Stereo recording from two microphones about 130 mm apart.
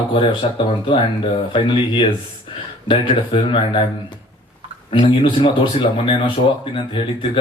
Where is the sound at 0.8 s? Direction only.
40° left (ahead or behind).